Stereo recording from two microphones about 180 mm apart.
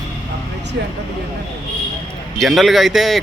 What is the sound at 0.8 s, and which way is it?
Speech, 70° right (ahead or behind).